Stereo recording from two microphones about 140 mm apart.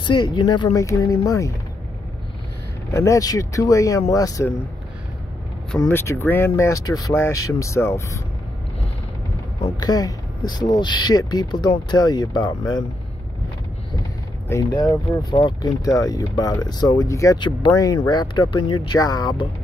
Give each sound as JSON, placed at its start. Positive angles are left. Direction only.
{"t": 0.0, "sound": "speech", "side_deg": 35}
{"t": 2.9, "sound": "speech", "side_deg": 20}
{"t": 5.9, "sound": "speech", "side_deg": 15}
{"t": 9.8, "sound": "speech", "side_deg": 30}
{"t": 14.5, "sound": "speech", "side_deg": 25}